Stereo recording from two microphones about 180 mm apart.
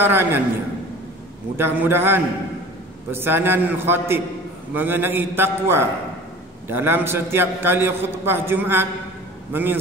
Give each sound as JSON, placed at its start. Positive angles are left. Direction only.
{"t": 0.0, "sound": "a man's voice", "side_deg": -10}
{"t": 1.6, "sound": "a man's voice", "side_deg": -10}